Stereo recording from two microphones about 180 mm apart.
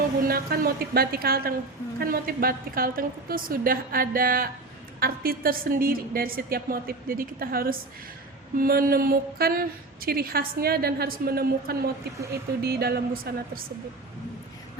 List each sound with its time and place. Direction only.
0.3 s speech: 55° right (ahead or behind)